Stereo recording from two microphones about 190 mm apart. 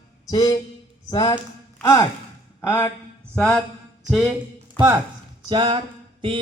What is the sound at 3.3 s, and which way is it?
Mantra, 5° left (ahead or behind).